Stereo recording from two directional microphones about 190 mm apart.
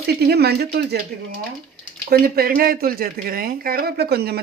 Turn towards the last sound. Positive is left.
turn(degrees=-60)  # may be behind; listen again after turning